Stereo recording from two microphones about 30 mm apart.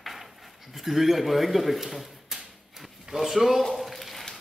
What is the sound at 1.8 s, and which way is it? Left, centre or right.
Drawer open or close, centre.